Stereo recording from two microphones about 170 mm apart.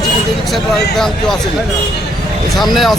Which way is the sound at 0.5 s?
Centre (ahead or behind).